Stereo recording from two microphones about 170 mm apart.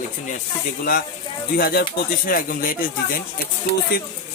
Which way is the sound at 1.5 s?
60° left (ahead or behind).